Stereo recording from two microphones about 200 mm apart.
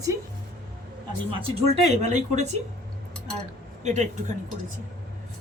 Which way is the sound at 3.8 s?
35° right (ahead or behind).